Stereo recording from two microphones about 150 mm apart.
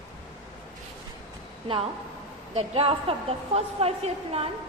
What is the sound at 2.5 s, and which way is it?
A woman's voice, 40° right (ahead or behind).